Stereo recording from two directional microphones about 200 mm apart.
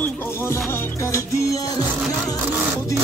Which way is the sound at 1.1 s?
15° left (ahead or behind).